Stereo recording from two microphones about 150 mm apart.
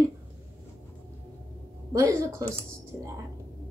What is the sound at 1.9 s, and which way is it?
Speech, 20° right (ahead or behind).